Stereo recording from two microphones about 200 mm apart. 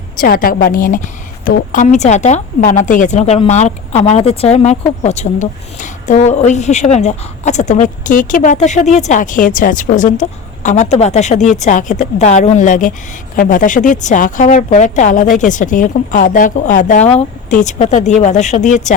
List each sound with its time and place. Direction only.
0.2 s a woman's voice: 45° left (ahead or behind)